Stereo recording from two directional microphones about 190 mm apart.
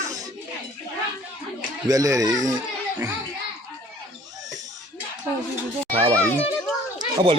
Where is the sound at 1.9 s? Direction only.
20° right (ahead or behind).